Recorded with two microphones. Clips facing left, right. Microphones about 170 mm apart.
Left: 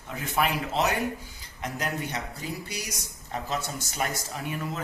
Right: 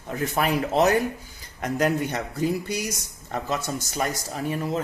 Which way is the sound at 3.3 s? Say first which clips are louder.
Right 4 dB; 45° right (ahead or behind).